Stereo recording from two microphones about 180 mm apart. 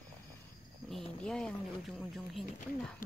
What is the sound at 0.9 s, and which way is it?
Speech, 5° left (ahead or behind).